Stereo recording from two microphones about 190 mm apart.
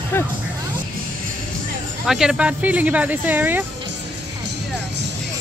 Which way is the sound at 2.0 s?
5° right (ahead or behind).